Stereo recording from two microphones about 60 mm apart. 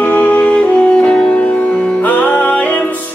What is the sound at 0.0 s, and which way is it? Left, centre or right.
Music, left.